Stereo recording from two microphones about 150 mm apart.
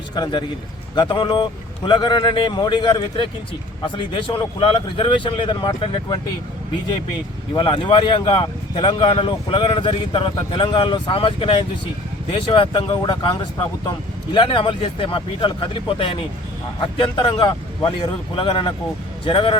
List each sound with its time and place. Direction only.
0.1 s a man's voice: 30° left (ahead or behind)
7.5 s speech: 35° left (ahead or behind)